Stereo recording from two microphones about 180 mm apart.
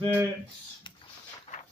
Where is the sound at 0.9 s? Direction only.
25° left (ahead or behind).